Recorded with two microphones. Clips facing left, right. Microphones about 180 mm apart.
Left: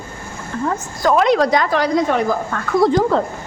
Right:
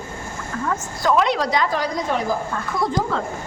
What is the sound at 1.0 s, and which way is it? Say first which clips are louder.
Speech: left 5 dB; 45° left (ahead or behind).